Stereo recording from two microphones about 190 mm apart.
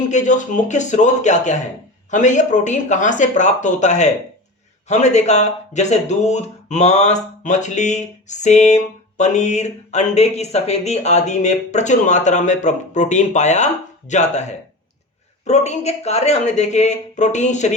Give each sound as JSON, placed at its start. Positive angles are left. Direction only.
{"t": 0.1, "sound": "speech", "side_deg": 40}
{"t": 15.4, "sound": "speech", "side_deg": 35}